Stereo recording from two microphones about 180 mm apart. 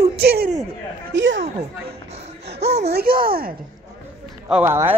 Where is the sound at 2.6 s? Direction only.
35° right (ahead or behind).